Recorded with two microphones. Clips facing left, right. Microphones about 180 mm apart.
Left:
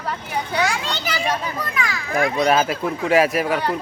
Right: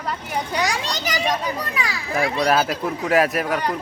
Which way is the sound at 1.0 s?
15° right (ahead or behind).